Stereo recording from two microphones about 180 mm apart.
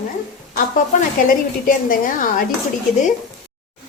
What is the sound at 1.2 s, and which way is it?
A woman's voice, 50° left (ahead or behind).